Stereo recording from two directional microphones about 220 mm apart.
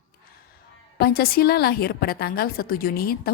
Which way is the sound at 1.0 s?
45° left (ahead or behind).